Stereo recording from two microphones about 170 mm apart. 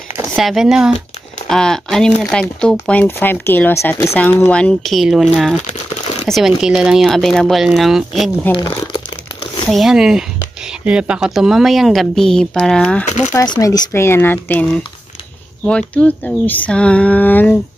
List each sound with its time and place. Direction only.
0.4 s speech: centre (ahead or behind)
9.7 s speech: centre (ahead or behind)
13.0 s speech: 45° left (ahead or behind)
13.3 s speech: 20° left (ahead or behind)